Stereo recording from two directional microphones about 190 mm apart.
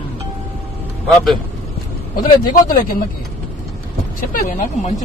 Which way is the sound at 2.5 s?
50° left (ahead or behind).